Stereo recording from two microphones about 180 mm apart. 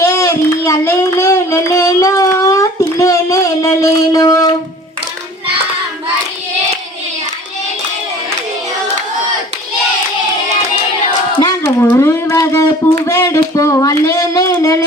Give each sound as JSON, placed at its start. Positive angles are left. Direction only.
{"t": 0.0, "sound": "child singing", "side_deg": 15}
{"t": 11.3, "sound": "a sound", "side_deg": 20}
{"t": 11.9, "sound": "music", "side_deg": 15}
{"t": 13.1, "sound": "child singing", "side_deg": 15}